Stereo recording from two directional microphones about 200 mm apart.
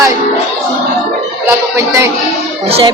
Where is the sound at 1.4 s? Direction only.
15° right (ahead or behind).